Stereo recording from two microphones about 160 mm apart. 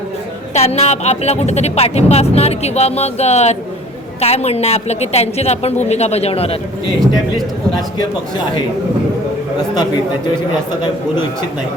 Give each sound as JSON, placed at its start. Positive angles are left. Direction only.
{"t": 0.5, "sound": "speech", "side_deg": 40}